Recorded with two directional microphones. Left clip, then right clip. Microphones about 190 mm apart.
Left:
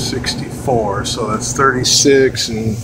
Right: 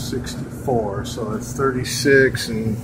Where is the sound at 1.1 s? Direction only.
20° left (ahead or behind).